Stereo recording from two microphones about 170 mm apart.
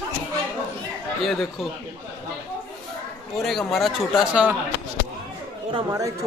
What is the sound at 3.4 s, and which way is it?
Speech, centre (ahead or behind).